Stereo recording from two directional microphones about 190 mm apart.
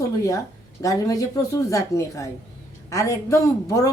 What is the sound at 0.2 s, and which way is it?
Speech, 15° left (ahead or behind).